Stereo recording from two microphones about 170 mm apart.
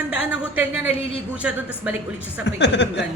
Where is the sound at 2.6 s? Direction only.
90° left.